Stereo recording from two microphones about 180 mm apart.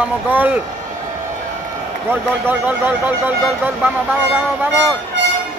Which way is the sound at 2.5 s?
10° right (ahead or behind).